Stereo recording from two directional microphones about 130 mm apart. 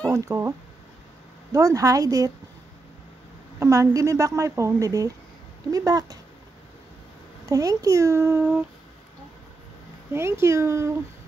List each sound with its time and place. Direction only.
0.0 s speech: 25° right (ahead or behind)
3.5 s speech: 25° right (ahead or behind)
7.4 s speech: 25° right (ahead or behind)
10.1 s speech: 20° right (ahead or behind)